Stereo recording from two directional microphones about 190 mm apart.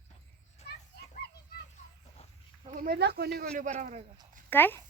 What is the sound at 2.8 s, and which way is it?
Speech, 60° right (ahead or behind).